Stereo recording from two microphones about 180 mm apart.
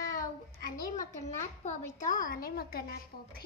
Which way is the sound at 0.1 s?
45° left (ahead or behind).